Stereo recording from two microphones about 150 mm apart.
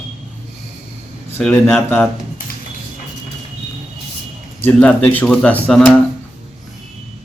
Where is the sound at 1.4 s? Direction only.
5° left (ahead or behind).